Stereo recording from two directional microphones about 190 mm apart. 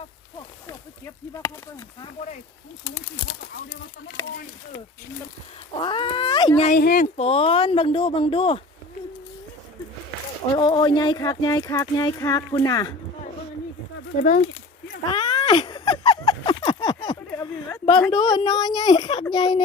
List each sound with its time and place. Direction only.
0.7 s speech: 15° left (ahead or behind)
4.2 s speech: 15° left (ahead or behind)
5.8 s speech: 25° left (ahead or behind)
6.7 s speech: 50° left (ahead or behind)
7.2 s speech: 30° left (ahead or behind)
10.5 s speech: 25° left (ahead or behind)
14.2 s speech: 45° left (ahead or behind)
15.1 s cat: 30° left (ahead or behind)
17.4 s a sound: 20° left (ahead or behind)
18.1 s speech: 25° left (ahead or behind)